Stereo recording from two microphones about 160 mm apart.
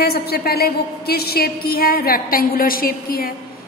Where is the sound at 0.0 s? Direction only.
75° left (ahead or behind).